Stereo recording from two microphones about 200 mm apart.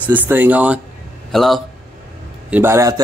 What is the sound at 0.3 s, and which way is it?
Speech, 10° right (ahead or behind).